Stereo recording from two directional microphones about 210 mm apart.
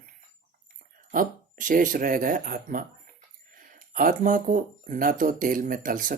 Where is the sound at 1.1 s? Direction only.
40° right (ahead or behind).